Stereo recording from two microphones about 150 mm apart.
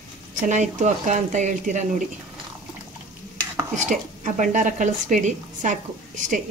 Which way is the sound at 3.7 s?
55° right (ahead or behind).